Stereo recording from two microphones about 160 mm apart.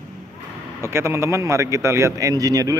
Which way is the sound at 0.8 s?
15° right (ahead or behind).